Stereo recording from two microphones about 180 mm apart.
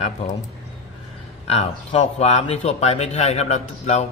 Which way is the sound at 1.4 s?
35° left (ahead or behind).